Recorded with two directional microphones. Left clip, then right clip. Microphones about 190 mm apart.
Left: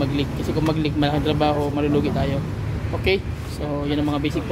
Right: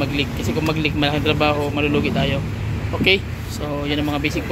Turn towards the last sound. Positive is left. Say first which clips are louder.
# right 2 dB
turn(degrees=10)  # may be behind; listen again after turning